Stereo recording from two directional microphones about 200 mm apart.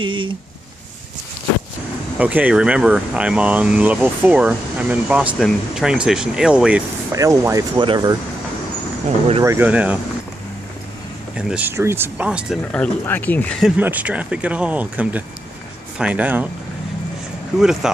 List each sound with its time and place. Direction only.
0.0 s speech: 25° right (ahead or behind)
2.1 s speech: 5° right (ahead or behind)
7.1 s speech: 15° right (ahead or behind)
9.4 s speech: 10° right (ahead or behind)
11.3 s speech: 5° right (ahead or behind)
12.7 s speech: 10° left (ahead or behind); by 16.4 s 10° right (ahead or behind)